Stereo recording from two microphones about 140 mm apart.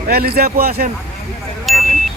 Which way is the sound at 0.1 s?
90° right.